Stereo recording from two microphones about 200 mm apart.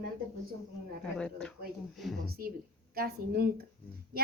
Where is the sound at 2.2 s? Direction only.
50° right (ahead or behind).